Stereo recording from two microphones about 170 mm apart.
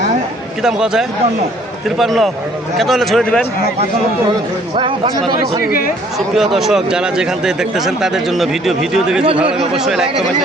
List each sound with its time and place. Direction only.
0.6 s speech: 5° right (ahead or behind)
4.8 s speech: 30° right (ahead or behind)
6.3 s speech: centre (ahead or behind)